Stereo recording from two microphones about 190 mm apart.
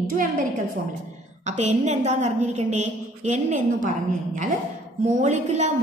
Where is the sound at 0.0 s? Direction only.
45° right (ahead or behind).